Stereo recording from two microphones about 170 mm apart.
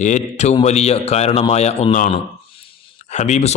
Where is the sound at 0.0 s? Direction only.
45° left (ahead or behind).